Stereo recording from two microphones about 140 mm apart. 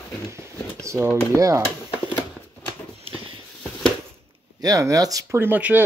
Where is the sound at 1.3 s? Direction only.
20° right (ahead or behind).